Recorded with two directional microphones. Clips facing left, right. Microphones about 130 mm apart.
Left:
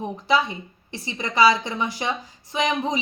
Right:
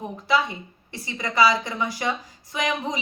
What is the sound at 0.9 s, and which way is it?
A woman's voice, 20° left (ahead or behind).